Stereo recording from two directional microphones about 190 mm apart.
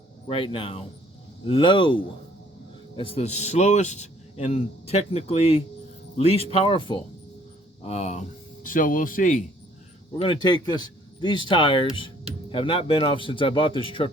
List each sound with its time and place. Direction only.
0.3 s a man's voice: 25° left (ahead or behind)
8.6 s speech: 45° left (ahead or behind)
10.1 s speech: 25° left (ahead or behind)